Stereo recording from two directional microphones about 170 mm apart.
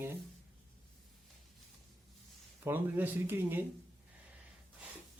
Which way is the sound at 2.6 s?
10° right (ahead or behind).